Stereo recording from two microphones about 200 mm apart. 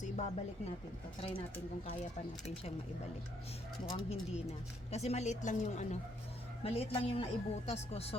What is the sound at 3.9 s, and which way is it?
Speech, 30° left (ahead or behind).